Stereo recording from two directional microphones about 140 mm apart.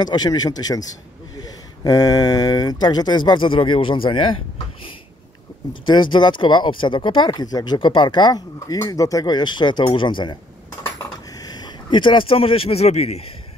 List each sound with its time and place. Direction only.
0.0 s speech: 30° left (ahead or behind)
5.7 s speech: 35° left (ahead or behind)
11.3 s speech: 30° left (ahead or behind); by 13.3 s 50° left (ahead or behind)